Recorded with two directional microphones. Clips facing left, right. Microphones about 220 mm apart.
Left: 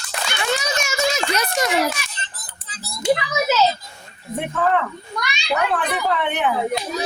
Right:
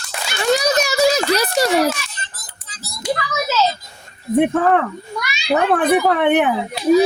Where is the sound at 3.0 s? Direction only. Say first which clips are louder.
Left 3 dB; 20° left (ahead or behind).